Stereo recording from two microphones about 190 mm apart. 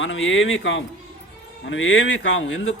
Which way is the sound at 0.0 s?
85° left.